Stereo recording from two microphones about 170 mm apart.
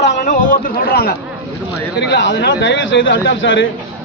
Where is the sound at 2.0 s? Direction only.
90° left.